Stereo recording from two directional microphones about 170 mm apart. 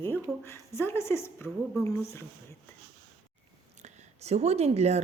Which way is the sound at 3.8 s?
40° right (ahead or behind).